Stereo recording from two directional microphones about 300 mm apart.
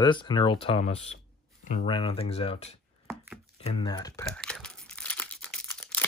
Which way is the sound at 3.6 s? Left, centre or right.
Centre.